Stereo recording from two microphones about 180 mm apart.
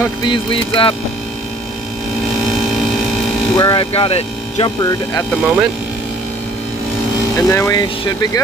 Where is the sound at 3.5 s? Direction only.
25° left (ahead or behind).